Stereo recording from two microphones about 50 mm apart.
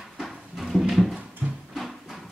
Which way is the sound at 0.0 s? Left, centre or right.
Centre.